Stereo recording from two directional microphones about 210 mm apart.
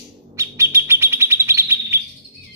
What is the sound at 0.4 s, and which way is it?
Bird, 15° right (ahead or behind).